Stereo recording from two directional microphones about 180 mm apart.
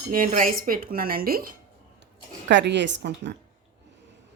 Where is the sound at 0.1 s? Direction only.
50° right (ahead or behind).